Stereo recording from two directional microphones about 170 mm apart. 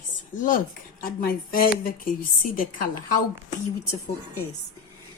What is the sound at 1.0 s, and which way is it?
A woman's voice, 60° left (ahead or behind).